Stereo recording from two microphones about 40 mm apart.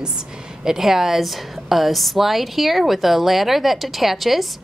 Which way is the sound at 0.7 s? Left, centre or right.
Centre.